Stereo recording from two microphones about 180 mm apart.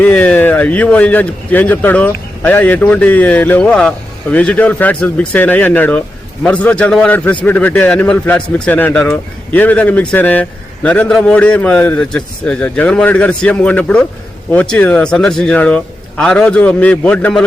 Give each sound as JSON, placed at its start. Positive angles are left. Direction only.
{"t": 0.0, "sound": "a man's voice", "side_deg": 10}